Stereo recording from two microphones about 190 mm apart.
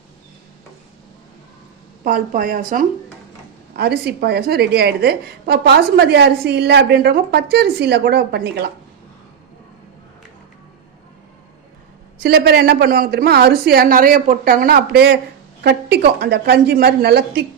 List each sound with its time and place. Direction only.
2.0 s a woman's voice: 45° right (ahead or behind)
3.8 s a woman's voice: 55° right (ahead or behind)
12.2 s a woman's voice: 60° right (ahead or behind)